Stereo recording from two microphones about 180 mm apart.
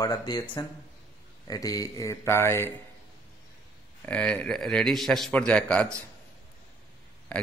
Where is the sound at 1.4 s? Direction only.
20° left (ahead or behind).